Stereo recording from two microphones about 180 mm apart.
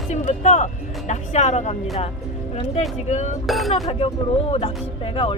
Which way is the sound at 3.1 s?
40° left (ahead or behind).